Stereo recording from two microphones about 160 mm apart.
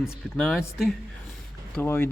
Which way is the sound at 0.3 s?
Centre (ahead or behind).